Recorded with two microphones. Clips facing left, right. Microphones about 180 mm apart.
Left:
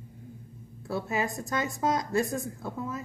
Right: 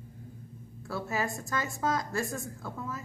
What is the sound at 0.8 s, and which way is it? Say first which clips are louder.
A woman's voice: left 3 dB; 20° left (ahead or behind).